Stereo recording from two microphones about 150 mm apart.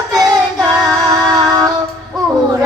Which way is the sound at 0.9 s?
25° right (ahead or behind).